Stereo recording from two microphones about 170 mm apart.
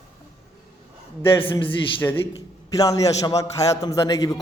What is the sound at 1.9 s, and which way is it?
A man's voice, 15° left (ahead or behind).